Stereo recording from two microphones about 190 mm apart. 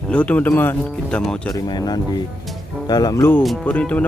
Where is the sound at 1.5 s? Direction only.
20° left (ahead or behind).